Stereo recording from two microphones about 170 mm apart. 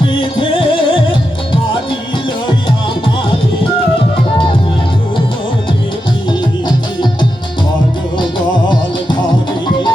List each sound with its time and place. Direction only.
0.0 s music: 30° left (ahead or behind)
6.7 s music: 25° left (ahead or behind)